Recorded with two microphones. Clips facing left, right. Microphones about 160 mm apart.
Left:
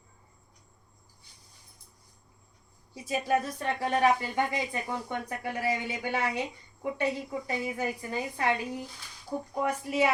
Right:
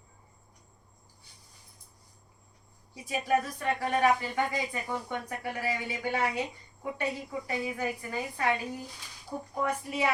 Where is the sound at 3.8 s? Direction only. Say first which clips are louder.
Left 1 dB; 25° left (ahead or behind).